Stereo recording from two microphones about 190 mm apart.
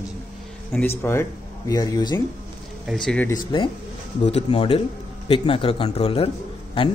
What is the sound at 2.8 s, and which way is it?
Speech, 5° left (ahead or behind).